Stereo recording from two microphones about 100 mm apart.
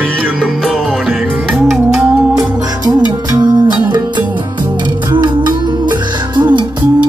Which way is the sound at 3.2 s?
40° right (ahead or behind).